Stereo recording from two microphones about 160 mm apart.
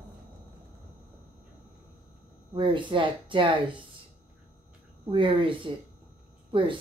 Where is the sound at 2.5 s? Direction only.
30° right (ahead or behind).